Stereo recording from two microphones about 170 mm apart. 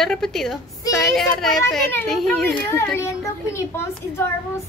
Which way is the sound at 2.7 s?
15° left (ahead or behind).